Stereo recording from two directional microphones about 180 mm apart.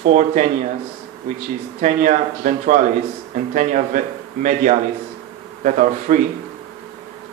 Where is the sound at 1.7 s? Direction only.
45° right (ahead or behind).